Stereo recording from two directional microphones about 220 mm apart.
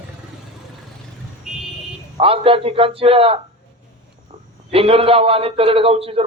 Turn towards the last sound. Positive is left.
turn(degrees=-25)  # may be behind; listen again after turning